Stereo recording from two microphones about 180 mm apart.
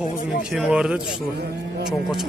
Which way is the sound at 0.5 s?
5° right (ahead or behind).